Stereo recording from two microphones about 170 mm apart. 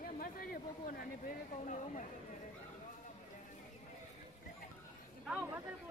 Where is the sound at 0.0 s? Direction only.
55° left (ahead or behind).